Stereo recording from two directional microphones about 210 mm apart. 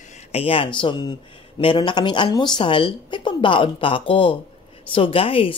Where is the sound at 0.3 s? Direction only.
30° left (ahead or behind).